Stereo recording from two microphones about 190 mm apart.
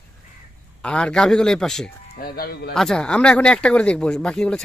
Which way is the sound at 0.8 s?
5° left (ahead or behind).